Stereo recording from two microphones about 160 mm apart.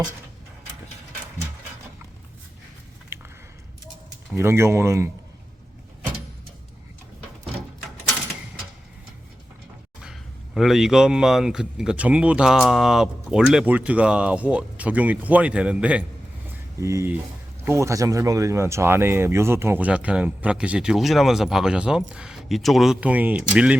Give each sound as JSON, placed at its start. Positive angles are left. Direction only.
{"t": 3.1, "sound": "a sound", "side_deg": -15}
{"t": 4.4, "sound": "speech", "side_deg": -15}
{"t": 10.0, "sound": "speech", "side_deg": -5}